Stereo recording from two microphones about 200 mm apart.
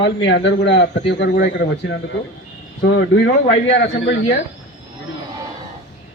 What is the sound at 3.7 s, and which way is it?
Speech, 65° left (ahead or behind).